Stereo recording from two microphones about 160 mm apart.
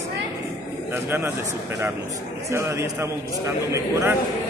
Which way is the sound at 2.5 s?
15° right (ahead or behind).